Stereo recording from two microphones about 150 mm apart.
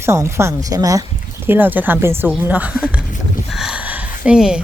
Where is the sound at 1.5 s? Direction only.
15° right (ahead or behind).